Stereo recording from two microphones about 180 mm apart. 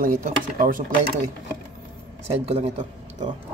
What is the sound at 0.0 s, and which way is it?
Speech, 45° right (ahead or behind).